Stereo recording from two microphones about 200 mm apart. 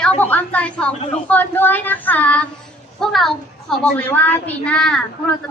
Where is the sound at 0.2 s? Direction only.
10° left (ahead or behind).